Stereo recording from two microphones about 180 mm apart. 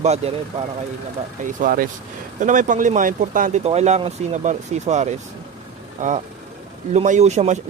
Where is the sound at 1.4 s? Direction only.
50° right (ahead or behind).